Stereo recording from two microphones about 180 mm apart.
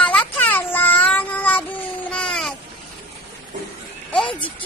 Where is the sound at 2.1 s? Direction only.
5° left (ahead or behind).